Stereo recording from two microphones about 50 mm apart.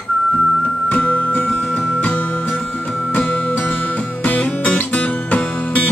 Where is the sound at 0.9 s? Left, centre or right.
Left.